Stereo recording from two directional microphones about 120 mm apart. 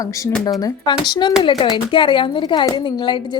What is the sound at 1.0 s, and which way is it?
A woman's voice, 40° left (ahead or behind).